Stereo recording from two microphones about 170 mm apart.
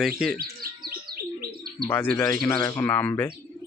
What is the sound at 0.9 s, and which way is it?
Bird, 65° right (ahead or behind).